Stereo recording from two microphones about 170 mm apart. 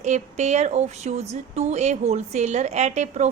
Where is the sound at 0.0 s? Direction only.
45° right (ahead or behind).